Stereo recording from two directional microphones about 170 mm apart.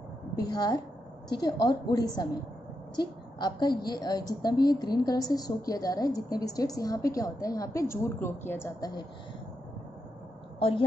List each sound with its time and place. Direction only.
0.4 s a woman's voice: 25° left (ahead or behind)